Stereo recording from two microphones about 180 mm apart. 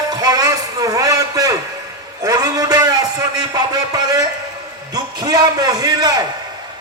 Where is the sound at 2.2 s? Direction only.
20° right (ahead or behind).